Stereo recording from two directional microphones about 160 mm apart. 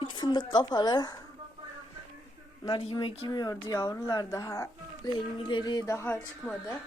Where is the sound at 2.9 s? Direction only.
30° left (ahead or behind); by 6.2 s 15° left (ahead or behind).